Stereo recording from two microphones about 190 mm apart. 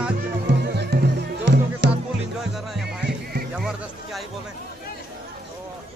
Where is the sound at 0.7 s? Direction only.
60° right (ahead or behind).